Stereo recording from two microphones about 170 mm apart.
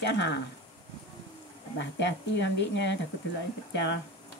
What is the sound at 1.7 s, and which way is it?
Speech, 90° left.